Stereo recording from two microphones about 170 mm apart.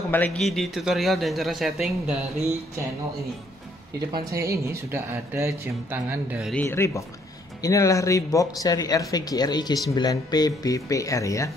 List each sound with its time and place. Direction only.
0.1 s a man's voice: 10° left (ahead or behind)
4.1 s speech: 20° right (ahead or behind)
6.5 s speech: 10° left (ahead or behind)